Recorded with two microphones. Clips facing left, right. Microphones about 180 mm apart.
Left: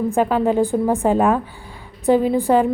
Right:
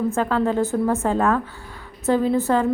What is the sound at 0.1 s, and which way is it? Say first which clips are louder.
A woman's voice: left 3 dB; 15° left (ahead or behind).